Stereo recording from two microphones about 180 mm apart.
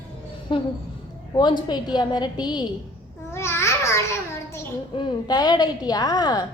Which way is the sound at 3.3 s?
15° left (ahead or behind).